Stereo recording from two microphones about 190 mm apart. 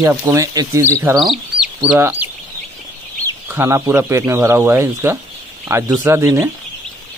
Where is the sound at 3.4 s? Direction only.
15° right (ahead or behind).